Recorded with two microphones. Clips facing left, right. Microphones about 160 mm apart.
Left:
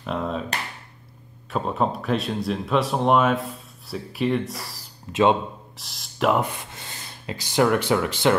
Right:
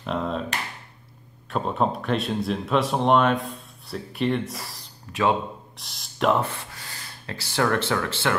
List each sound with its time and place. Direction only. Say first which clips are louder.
0.0 s a sound: even; centre (ahead or behind)
1.5 s speech: even; centre (ahead or behind)
5.1 s a man's voice: left 4 dB; 25° left (ahead or behind)
5.8 s speech: left 1 dB; centre (ahead or behind)
6.3 s speech: left 1 dB; 15° left (ahead or behind)